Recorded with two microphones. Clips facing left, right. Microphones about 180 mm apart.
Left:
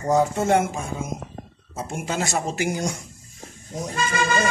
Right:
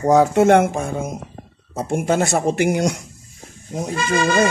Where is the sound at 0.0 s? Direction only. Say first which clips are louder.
Right 7 dB; 80° right.